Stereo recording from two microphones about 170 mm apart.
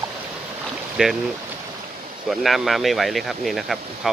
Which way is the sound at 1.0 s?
5° right (ahead or behind).